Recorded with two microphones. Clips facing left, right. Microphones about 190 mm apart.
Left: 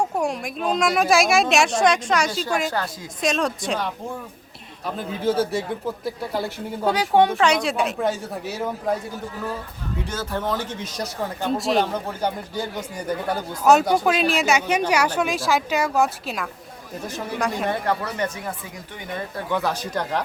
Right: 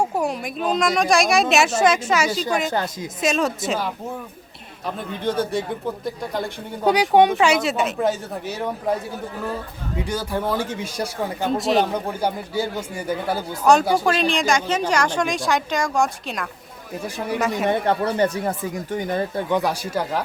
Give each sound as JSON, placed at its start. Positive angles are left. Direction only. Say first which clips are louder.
{"t": 0.0, "sound": "speech", "louder": "right 1 dB", "side_deg": 0}
{"t": 2.7, "sound": "a woman's voice", "louder": "right 3 dB", "side_deg": -20}
{"t": 3.2, "sound": "speech", "louder": "right 1 dB", "side_deg": -5}
{"t": 5.2, "sound": "speech", "louder": "left 1 dB", "side_deg": 5}
{"t": 6.8, "sound": "speech", "louder": "right 3 dB", "side_deg": -15}
{"t": 7.5, "sound": "speech", "louder": "right 1 dB", "side_deg": 0}
{"t": 10.0, "sound": "speech", "louder": "right 3 dB", "side_deg": -15}
{"t": 17.7, "sound": "speech", "louder": "right 4 dB", "side_deg": -25}
{"t": 19.5, "sound": "speech", "louder": "right 3 dB", "side_deg": -15}